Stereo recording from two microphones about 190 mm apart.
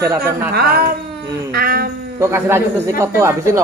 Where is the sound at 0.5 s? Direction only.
55° right (ahead or behind).